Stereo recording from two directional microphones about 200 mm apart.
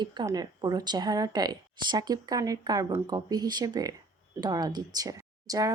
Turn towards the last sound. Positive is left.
turn(degrees=-15)  # may be behind; listen again after turning